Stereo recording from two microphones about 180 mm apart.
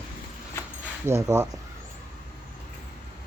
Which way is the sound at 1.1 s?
15° right (ahead or behind).